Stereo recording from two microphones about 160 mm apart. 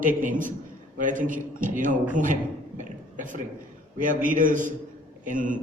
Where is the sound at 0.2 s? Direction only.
55° right (ahead or behind).